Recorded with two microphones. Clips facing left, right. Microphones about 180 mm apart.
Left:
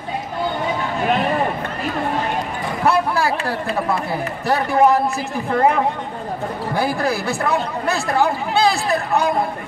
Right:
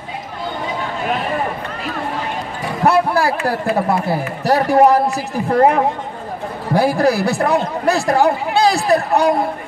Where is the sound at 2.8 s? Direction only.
40° right (ahead or behind).